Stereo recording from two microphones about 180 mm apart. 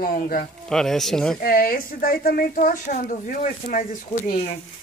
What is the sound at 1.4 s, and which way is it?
Speech, 50° left (ahead or behind).